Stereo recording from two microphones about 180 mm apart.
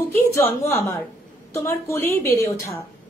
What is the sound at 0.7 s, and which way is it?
A woman's voice, 15° left (ahead or behind).